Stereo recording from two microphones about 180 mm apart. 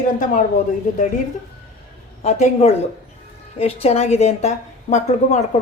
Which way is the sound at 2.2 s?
40° left (ahead or behind).